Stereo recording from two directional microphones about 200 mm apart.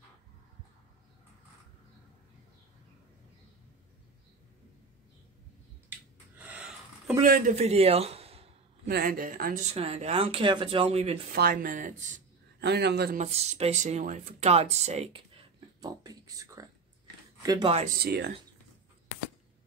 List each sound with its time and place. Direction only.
5.9 s finger snapping: 10° right (ahead or behind)
7.2 s a man's voice: 45° right (ahead or behind)
8.8 s speech: 45° right (ahead or behind)
9.7 s speech: 30° right (ahead or behind)
11.3 s speech: 50° right (ahead or behind)
12.5 s a man's voice: 55° right (ahead or behind)
13.2 s speech: 35° right (ahead or behind)
17.9 s speech: 55° right (ahead or behind)